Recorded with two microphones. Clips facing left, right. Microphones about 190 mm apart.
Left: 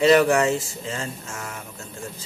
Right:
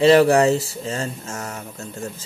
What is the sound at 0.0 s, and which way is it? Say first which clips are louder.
Speech: right 3 dB; 30° right (ahead or behind).